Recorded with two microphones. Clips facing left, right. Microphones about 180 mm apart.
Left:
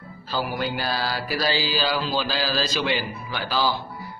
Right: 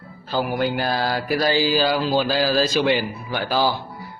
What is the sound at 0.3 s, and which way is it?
Mantra, 50° right (ahead or behind).